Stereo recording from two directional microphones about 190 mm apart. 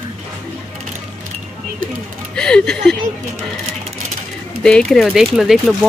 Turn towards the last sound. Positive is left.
turn(degrees=0)  # may be behind; listen again after turning